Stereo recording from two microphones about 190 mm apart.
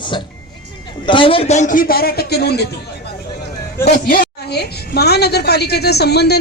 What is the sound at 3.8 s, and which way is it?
A woman's voice, 45° left (ahead or behind).